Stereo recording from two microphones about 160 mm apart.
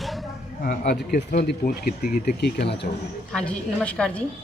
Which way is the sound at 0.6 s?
65° left (ahead or behind).